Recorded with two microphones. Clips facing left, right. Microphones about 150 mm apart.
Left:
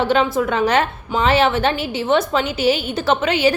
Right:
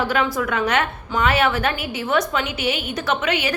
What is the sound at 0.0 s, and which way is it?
A woman's voice, 25° left (ahead or behind).